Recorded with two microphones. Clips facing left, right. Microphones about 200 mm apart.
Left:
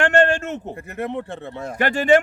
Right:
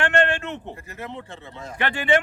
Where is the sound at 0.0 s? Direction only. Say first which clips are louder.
Left 5 dB; 45° left (ahead or behind).